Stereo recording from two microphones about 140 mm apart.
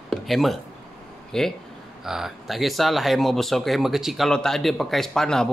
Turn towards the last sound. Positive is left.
turn(degrees=5)  # may be behind; listen again after turning